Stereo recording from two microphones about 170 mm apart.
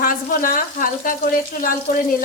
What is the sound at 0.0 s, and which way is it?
A woman's voice, 55° left (ahead or behind).